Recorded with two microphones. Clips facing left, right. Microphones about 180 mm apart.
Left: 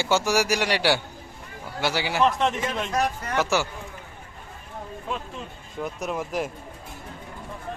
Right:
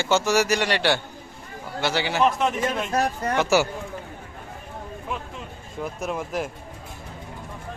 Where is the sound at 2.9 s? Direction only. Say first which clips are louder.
Right 2 dB; 30° right (ahead or behind).